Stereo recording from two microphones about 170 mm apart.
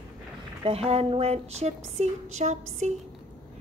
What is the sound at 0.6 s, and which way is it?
Speech, 35° right (ahead or behind).